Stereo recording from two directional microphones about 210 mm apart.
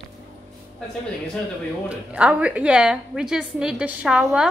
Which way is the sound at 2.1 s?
5° right (ahead or behind).